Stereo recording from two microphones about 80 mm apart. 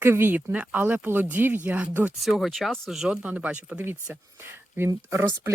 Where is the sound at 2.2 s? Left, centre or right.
Centre.